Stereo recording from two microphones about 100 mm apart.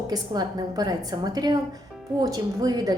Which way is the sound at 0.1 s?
40° right (ahead or behind).